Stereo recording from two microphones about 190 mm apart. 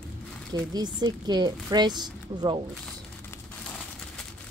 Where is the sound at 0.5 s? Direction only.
20° right (ahead or behind).